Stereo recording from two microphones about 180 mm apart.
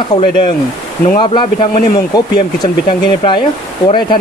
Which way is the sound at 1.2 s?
25° left (ahead or behind).